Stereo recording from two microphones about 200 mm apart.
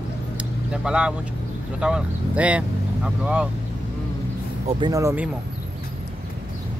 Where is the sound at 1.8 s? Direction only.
5° right (ahead or behind).